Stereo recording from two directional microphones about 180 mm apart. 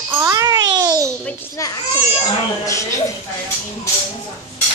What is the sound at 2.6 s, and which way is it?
Speech, 15° left (ahead or behind).